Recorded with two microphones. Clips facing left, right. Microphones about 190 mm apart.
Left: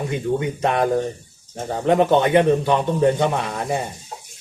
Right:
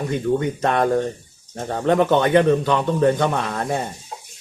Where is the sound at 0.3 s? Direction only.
10° left (ahead or behind).